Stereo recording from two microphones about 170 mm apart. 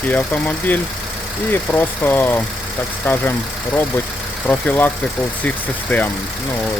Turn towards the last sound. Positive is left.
turn(degrees=5)  # may be behind; listen again after turning